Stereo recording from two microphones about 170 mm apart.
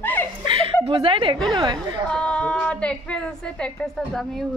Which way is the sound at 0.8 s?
30° right (ahead or behind).